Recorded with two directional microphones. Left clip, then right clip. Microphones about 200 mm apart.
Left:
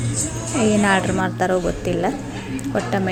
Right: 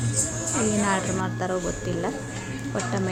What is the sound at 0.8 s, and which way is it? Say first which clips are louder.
Speech: left 7 dB; 15° left (ahead or behind).